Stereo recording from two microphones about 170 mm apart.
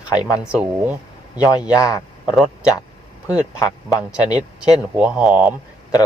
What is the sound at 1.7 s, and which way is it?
Speech, 20° left (ahead or behind).